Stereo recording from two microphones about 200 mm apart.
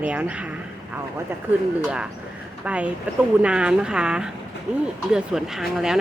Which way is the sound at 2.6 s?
5° right (ahead or behind).